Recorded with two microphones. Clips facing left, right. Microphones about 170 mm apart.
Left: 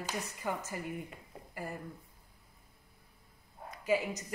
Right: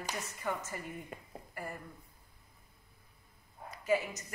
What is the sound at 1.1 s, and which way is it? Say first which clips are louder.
Speech: right 5 dB; 50° right (ahead or behind).